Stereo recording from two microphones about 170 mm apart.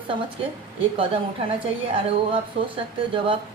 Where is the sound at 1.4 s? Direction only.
35° right (ahead or behind).